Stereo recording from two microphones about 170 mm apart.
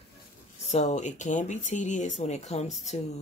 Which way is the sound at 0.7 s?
40° left (ahead or behind).